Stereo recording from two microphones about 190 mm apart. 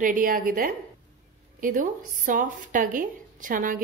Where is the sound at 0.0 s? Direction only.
45° right (ahead or behind).